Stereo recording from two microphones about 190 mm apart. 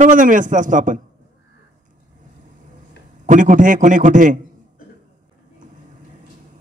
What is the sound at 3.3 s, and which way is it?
A man's voice, 45° right (ahead or behind).